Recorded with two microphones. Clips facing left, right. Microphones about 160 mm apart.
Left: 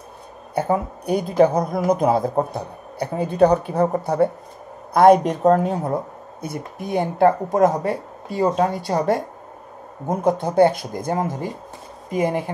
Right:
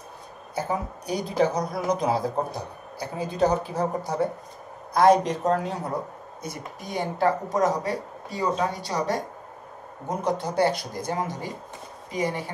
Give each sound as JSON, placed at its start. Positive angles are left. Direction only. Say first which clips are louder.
{"t": 0.6, "sound": "a woman's voice", "louder": "left 7 dB", "side_deg": 55}